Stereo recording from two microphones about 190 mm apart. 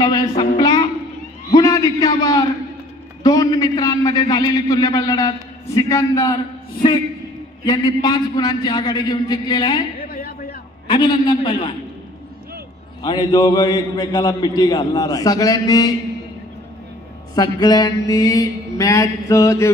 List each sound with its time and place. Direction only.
0.0 s a man's voice: 20° left (ahead or behind)
10.0 s a sound: 50° left (ahead or behind)
10.9 s a man's voice: 25° left (ahead or behind)
13.0 s a man's voice: 25° left (ahead or behind)
17.4 s a man's voice: 20° left (ahead or behind)
18.1 s mantra: 20° left (ahead or behind)